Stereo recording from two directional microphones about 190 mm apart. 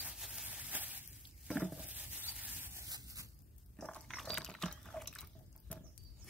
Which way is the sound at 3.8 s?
5° left (ahead or behind).